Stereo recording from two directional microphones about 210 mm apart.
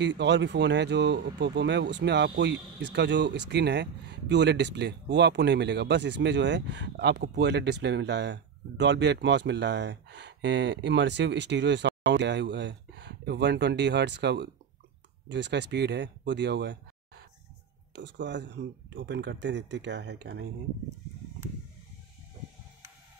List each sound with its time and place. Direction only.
0.0 s speech: 55° right (ahead or behind)